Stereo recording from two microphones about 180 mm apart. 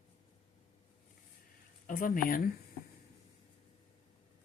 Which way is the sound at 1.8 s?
50° left (ahead or behind).